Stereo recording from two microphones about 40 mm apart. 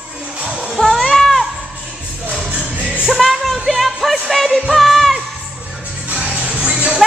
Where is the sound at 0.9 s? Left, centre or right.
Centre.